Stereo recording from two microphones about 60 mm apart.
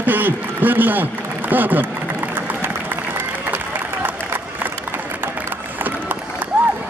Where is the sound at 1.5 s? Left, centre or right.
Right.